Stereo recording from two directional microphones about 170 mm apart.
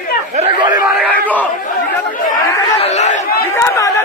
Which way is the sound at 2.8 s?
40° left (ahead or behind).